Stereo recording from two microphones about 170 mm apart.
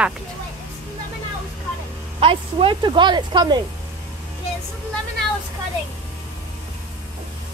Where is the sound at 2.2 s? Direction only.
30° right (ahead or behind).